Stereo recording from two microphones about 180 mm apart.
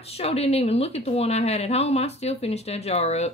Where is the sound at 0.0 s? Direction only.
35° left (ahead or behind).